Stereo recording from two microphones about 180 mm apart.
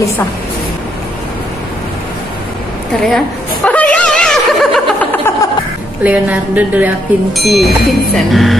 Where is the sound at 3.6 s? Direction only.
5° left (ahead or behind).